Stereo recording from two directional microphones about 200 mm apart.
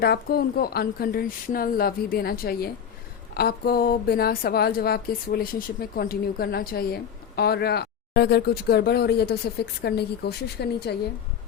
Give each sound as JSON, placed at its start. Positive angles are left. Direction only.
{"t": 0.0, "sound": "a woman's voice", "side_deg": 50}